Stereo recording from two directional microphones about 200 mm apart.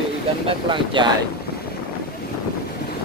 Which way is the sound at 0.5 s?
25° right (ahead or behind).